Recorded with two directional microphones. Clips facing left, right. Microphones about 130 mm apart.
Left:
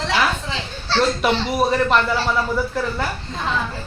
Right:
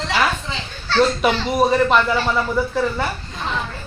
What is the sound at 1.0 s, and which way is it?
Speech, centre (ahead or behind).